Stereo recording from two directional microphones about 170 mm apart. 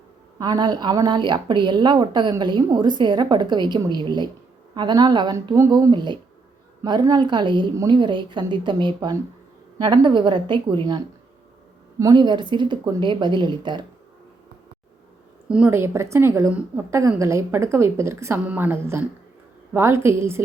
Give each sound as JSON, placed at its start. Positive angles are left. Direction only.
{"t": 0.3, "sound": "a woman's voice", "side_deg": -25}
{"t": 15.4, "sound": "a woman's voice", "side_deg": -5}